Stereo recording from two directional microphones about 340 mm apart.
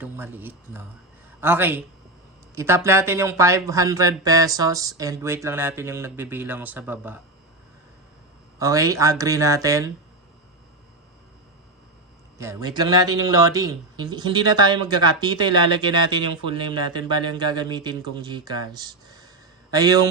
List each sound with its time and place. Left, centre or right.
0.0 s a man's voice: centre
8.5 s a man's voice: centre
12.4 s a man's voice: centre